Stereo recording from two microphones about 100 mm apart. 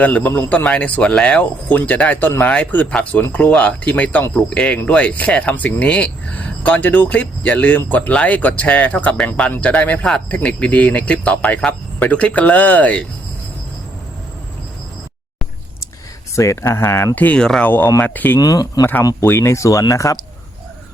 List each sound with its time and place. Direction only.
0.0 s speech: 15° left (ahead or behind)
16.3 s speech: 30° left (ahead or behind)
17.2 s speech: 15° left (ahead or behind)
17.7 s speech: 25° left (ahead or behind)
18.3 s speech: 40° left (ahead or behind)
19.2 s speech: 25° left (ahead or behind)